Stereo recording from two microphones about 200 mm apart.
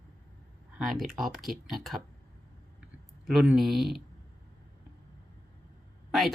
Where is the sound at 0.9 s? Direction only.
Centre (ahead or behind).